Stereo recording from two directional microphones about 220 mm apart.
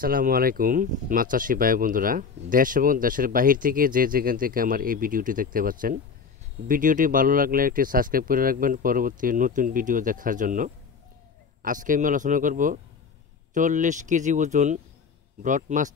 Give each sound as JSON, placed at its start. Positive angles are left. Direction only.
{"t": 0.0, "sound": "speech", "side_deg": -40}